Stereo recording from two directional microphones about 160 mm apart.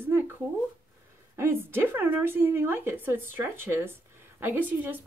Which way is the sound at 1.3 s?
15° right (ahead or behind).